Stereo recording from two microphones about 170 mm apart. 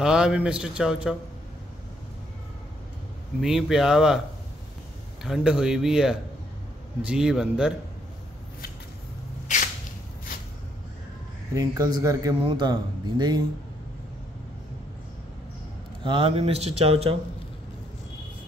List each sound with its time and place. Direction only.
0.0 s a man's voice: 5° right (ahead or behind)
3.3 s a man's voice: centre (ahead or behind)
5.2 s a man's voice: 5° right (ahead or behind)
9.5 s a sound: 45° left (ahead or behind)
11.5 s a man's voice: 20° right (ahead or behind)
16.0 s speech: 30° right (ahead or behind)